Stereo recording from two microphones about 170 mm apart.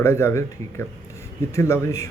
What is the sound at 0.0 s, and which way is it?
Speech, 15° left (ahead or behind).